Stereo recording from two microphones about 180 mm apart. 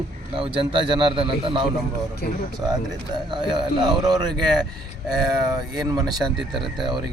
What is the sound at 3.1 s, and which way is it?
Speech, 25° right (ahead or behind).